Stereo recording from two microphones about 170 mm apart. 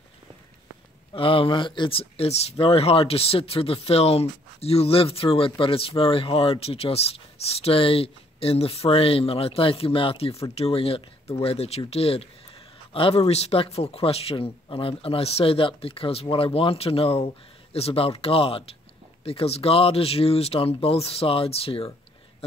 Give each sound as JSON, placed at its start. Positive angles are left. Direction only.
{"t": 1.1, "sound": "speech", "side_deg": 30}